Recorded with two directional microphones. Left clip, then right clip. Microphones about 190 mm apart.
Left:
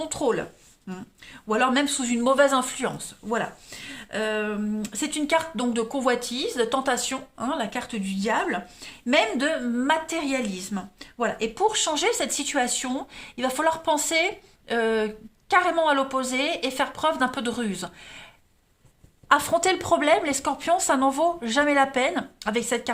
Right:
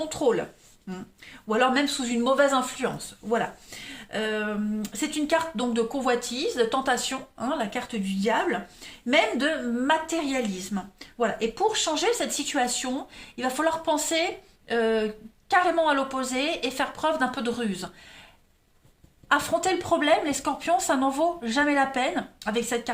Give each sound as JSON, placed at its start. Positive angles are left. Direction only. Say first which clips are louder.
{"t": 0.0, "sound": "speech", "louder": "right 1 dB", "side_deg": 25}
{"t": 1.5, "sound": "speech", "louder": "even", "side_deg": 25}
{"t": 19.3, "sound": "speech", "louder": "left 3 dB", "side_deg": 35}